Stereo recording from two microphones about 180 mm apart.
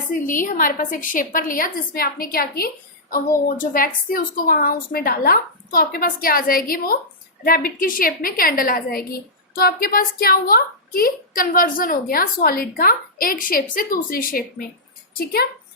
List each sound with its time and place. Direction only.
0.1 s a woman's voice: 50° left (ahead or behind)